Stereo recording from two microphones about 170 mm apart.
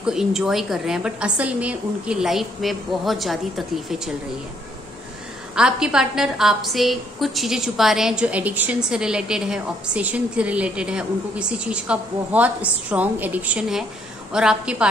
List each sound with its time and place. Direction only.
0.0 s a woman's voice: 5° right (ahead or behind)
5.5 s a woman's voice: 5° right (ahead or behind)